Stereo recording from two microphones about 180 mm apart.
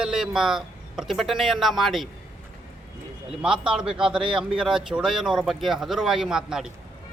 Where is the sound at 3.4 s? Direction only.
5° right (ahead or behind).